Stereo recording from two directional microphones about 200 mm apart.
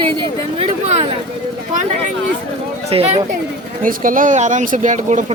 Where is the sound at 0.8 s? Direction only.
30° right (ahead or behind).